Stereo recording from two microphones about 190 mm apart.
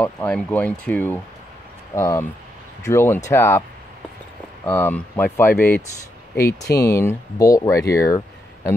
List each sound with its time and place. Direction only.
0.0 s speech: 5° left (ahead or behind)
4.6 s speech: 10° left (ahead or behind)